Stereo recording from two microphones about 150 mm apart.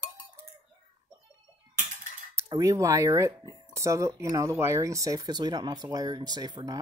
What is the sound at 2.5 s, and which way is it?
A child's voice, 20° right (ahead or behind).